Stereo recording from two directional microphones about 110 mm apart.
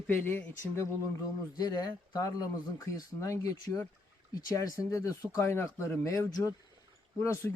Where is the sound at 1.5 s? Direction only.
40° left (ahead or behind).